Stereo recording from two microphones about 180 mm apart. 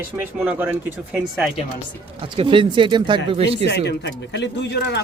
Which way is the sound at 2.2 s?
30° right (ahead or behind).